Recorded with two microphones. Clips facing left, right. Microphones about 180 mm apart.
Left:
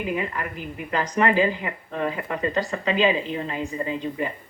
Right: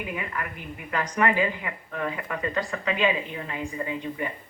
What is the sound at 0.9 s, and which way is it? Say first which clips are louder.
A woman's voice: left 3 dB; 30° left (ahead or behind).